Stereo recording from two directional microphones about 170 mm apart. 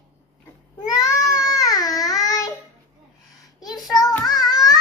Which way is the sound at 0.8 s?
20° left (ahead or behind).